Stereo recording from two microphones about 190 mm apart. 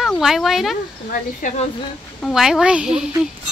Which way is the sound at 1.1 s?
45° left (ahead or behind).